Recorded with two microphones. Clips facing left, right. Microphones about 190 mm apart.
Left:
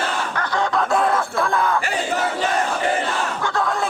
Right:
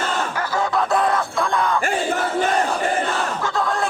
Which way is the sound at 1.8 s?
50° right (ahead or behind).